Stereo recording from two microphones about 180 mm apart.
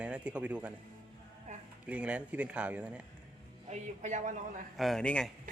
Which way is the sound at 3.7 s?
40° right (ahead or behind).